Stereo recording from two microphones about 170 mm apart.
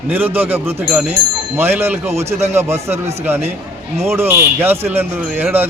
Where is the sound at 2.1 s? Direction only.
40° right (ahead or behind).